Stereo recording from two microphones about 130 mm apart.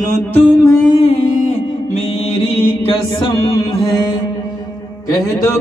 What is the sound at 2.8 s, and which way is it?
Music, 40° left (ahead or behind).